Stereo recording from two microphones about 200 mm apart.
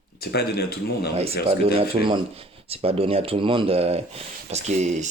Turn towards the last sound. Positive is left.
turn(degrees=-35)  # may be behind; listen again after turning